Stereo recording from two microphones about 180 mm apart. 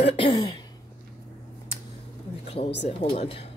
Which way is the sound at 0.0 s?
30° left (ahead or behind).